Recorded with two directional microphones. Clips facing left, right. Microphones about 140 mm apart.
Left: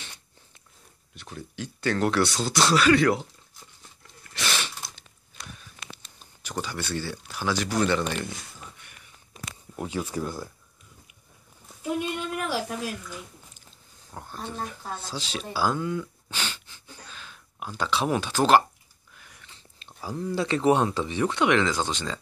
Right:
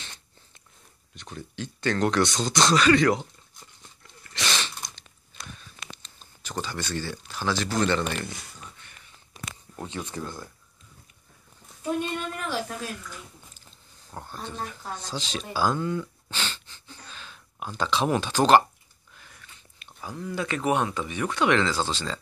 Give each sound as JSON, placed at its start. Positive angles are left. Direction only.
{"t": 1.1, "sound": "speech", "side_deg": 5}
{"t": 4.3, "sound": "sneeze", "side_deg": 5}
{"t": 5.9, "sound": "speech", "side_deg": 10}
{"t": 9.8, "sound": "speech", "side_deg": 10}
{"t": 12.0, "sound": "a sound", "side_deg": 10}
{"t": 14.1, "sound": "speech", "side_deg": 5}
{"t": 19.5, "sound": "speech", "side_deg": 30}